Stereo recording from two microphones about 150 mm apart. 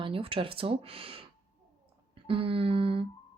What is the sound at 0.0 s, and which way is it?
Speech, 35° right (ahead or behind).